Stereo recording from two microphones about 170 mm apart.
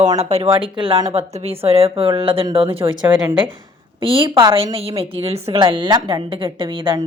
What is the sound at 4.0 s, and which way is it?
A woman's voice, 30° right (ahead or behind).